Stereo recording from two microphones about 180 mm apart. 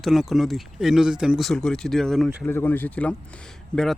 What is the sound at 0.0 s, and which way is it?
Speech, centre (ahead or behind).